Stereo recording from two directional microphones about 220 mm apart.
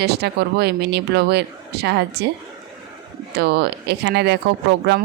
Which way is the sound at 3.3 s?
45° right (ahead or behind).